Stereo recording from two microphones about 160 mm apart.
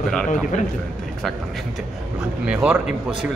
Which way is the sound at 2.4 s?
5° right (ahead or behind).